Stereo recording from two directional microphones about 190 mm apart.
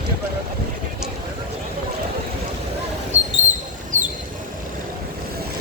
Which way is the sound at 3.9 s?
40° right (ahead or behind).